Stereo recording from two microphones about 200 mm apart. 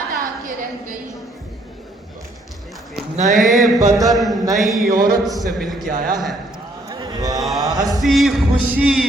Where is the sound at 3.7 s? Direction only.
15° right (ahead or behind).